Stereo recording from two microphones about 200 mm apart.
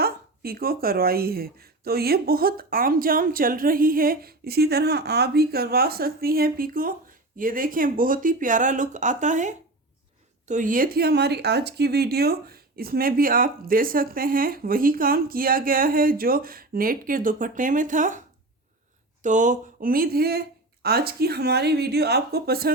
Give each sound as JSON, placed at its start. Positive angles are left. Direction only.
{"t": 0.0, "sound": "speech", "side_deg": -50}
{"t": 19.2, "sound": "speech", "side_deg": -40}